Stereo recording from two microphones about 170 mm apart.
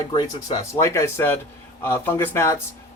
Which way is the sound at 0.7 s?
15° left (ahead or behind).